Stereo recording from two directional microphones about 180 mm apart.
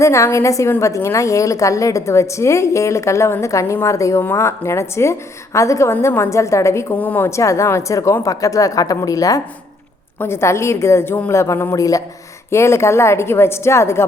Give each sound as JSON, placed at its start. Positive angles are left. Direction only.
{"t": 0.0, "sound": "a woman's voice", "side_deg": 15}